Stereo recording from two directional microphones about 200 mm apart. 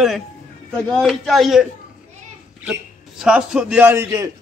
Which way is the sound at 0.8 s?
5° left (ahead or behind).